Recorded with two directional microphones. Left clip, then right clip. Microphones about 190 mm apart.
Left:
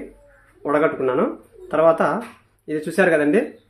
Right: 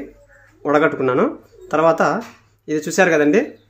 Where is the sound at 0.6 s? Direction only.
20° right (ahead or behind).